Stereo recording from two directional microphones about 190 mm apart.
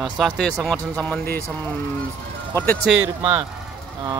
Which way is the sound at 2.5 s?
10° left (ahead or behind).